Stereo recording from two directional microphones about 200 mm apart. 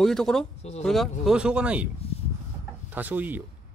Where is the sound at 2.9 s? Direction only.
10° right (ahead or behind).